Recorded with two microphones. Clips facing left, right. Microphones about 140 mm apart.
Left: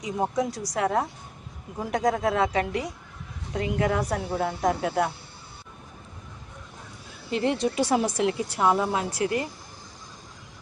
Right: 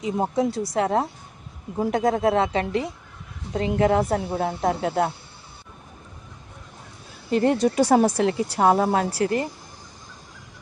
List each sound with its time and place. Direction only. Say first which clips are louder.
0.0 s a woman's voice: right 3 dB; 25° right (ahead or behind)
7.3 s a woman's voice: right 5 dB; 45° right (ahead or behind)